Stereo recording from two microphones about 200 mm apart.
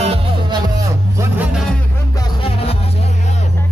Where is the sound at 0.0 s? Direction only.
30° right (ahead or behind).